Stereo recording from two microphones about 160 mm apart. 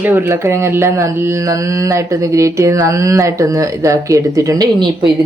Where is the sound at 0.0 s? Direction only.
15° right (ahead or behind).